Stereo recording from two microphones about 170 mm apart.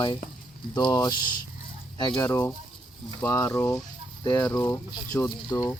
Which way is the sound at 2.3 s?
10° left (ahead or behind).